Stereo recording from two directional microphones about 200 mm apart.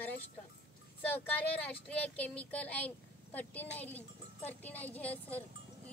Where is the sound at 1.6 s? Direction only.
5° left (ahead or behind).